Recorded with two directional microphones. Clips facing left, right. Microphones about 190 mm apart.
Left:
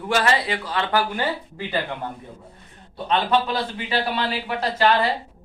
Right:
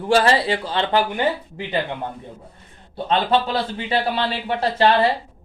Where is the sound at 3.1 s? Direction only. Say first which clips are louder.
Right 2 dB; 30° right (ahead or behind).